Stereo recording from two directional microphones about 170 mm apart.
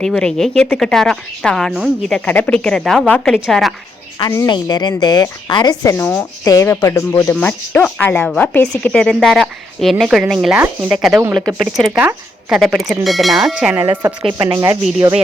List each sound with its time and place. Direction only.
0.0 s speech: 5° left (ahead or behind)
4.2 s a woman's voice: 20° left (ahead or behind); by 13.7 s 5° right (ahead or behind)
14.0 s a woman's voice: 25° right (ahead or behind)